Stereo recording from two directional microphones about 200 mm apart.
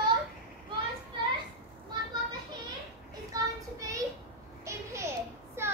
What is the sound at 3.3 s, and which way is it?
Child singing, 15° right (ahead or behind).